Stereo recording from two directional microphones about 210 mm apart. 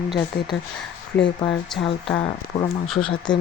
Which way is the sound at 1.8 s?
25° left (ahead or behind).